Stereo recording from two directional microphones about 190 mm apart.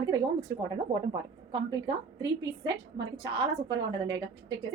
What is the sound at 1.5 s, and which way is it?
A woman's voice, 25° right (ahead or behind).